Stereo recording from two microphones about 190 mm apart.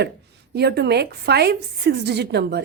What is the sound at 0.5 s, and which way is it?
A woman's voice, 60° right (ahead or behind).